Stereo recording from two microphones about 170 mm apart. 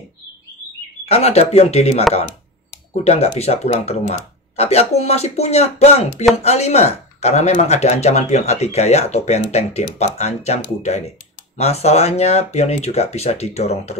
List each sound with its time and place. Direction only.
1.0 s speech: 40° left (ahead or behind)